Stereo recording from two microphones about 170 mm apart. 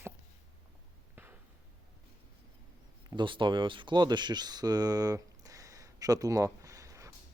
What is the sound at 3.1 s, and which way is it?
Speech, 25° right (ahead or behind).